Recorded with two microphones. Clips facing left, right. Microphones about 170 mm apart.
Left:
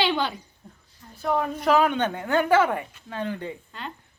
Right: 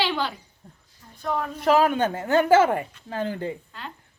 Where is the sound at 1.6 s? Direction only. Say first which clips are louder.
Right 3 dB; centre (ahead or behind).